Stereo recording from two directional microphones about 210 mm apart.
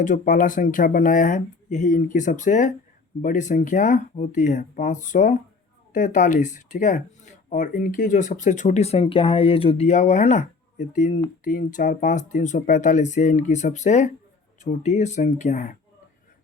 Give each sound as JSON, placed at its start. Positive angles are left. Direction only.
{"t": 0.0, "sound": "speech", "side_deg": 40}